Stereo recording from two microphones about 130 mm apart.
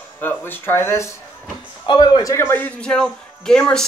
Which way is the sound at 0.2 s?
15° left (ahead or behind).